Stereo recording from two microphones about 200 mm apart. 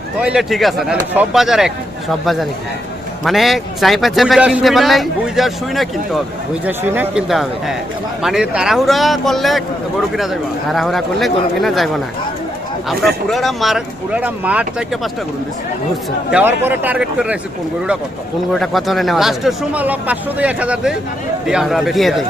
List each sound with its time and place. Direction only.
0.2 s a man's voice: 5° right (ahead or behind)
13.2 s a man's voice: centre (ahead or behind)
16.3 s a man's voice: 10° right (ahead or behind)
18.5 s a man's voice: centre (ahead or behind)